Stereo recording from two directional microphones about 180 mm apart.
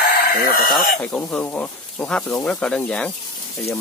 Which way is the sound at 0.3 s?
55° left (ahead or behind).